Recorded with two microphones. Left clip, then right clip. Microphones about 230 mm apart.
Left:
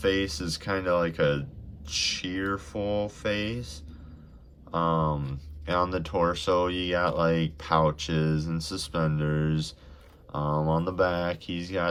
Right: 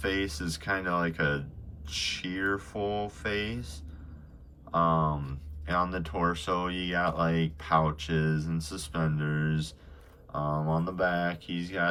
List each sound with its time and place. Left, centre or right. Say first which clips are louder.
0.0 s speech: left 4 dB; centre